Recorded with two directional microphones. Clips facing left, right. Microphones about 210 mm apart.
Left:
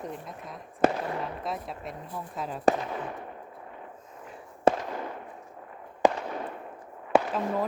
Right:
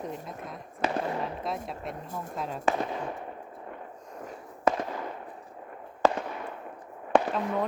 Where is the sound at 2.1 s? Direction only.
45° right (ahead or behind).